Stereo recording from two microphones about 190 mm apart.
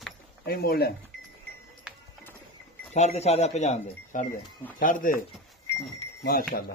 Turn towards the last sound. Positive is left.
turn(degrees=50)  # may be behind; listen again after turning